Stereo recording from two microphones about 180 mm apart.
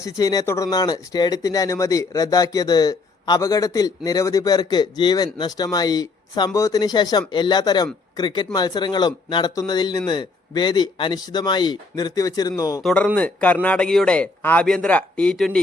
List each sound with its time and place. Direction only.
0.0 s speech: 20° left (ahead or behind)
12.8 s a man's voice: 5° left (ahead or behind)